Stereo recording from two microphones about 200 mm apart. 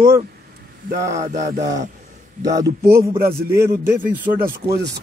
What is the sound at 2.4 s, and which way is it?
Speech, 15° right (ahead or behind).